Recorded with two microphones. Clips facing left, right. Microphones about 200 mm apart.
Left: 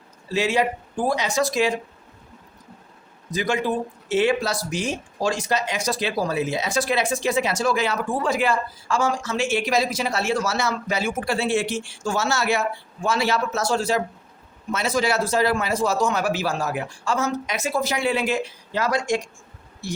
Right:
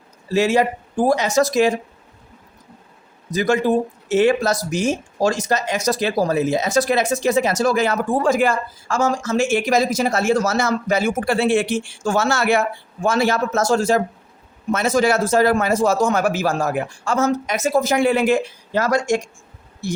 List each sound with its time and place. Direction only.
0.3 s speech: 45° right (ahead or behind)
3.3 s speech: 45° right (ahead or behind)